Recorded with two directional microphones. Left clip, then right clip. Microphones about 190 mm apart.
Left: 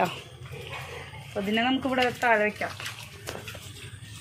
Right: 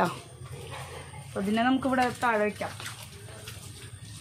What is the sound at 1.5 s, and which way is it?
Speech, 60° right (ahead or behind).